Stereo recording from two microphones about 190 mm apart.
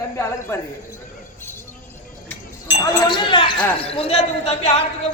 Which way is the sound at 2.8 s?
25° left (ahead or behind).